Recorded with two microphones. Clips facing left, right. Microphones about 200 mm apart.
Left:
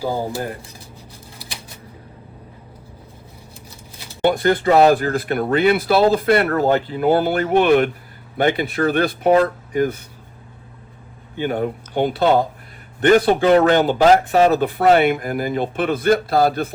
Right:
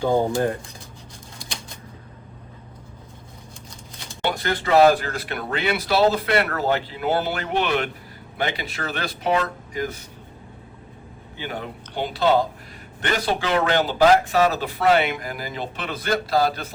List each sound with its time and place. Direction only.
4.2 s a sound: 50° left (ahead or behind)
4.7 s speech: 50° left (ahead or behind)
11.3 s speech: 50° left (ahead or behind)